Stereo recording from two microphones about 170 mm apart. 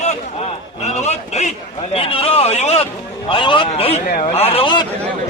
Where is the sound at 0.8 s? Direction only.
40° left (ahead or behind).